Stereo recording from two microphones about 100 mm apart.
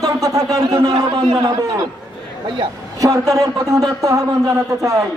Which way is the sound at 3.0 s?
35° right (ahead or behind).